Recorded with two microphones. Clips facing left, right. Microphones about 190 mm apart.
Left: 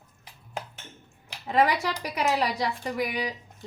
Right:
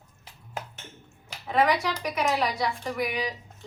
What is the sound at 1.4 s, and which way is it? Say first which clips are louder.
Speech: even; 35° left (ahead or behind).